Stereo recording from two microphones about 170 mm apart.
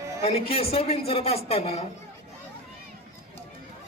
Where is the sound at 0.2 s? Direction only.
35° left (ahead or behind).